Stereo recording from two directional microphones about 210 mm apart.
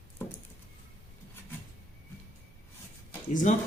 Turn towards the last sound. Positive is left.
turn(degrees=40)  # may be behind; listen again after turning